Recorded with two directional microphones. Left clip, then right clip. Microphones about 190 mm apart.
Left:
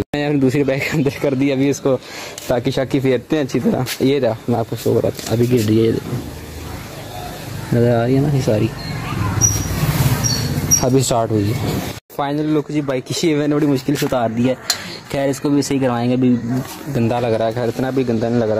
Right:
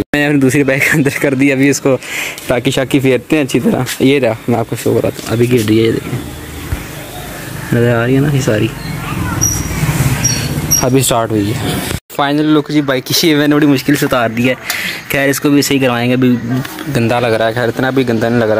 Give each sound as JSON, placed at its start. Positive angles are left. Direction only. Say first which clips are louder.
{"t": 0.1, "sound": "speech", "louder": "right 6 dB", "side_deg": 0}
{"t": 7.7, "sound": "speech", "louder": "right 3 dB", "side_deg": 0}
{"t": 10.8, "sound": "speech", "louder": "right 6 dB", "side_deg": 0}